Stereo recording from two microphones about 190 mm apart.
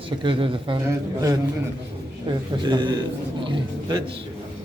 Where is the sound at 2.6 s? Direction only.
25° right (ahead or behind).